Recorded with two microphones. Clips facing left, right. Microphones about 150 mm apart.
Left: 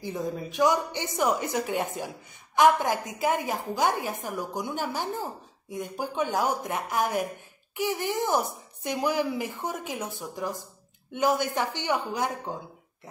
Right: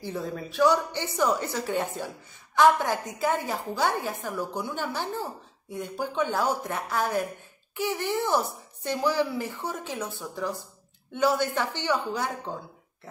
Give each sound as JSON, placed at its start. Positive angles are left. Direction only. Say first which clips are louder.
{"t": 0.0, "sound": "a woman's voice", "louder": "left 1 dB", "side_deg": 15}